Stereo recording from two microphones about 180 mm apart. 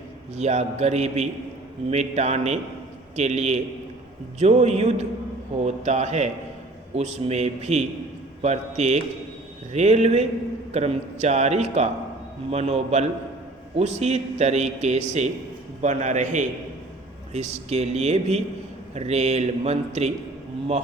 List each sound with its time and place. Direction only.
0.3 s a man's voice: 40° right (ahead or behind)